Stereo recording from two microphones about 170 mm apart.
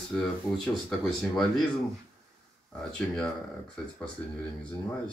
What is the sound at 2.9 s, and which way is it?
Speech, 5° left (ahead or behind).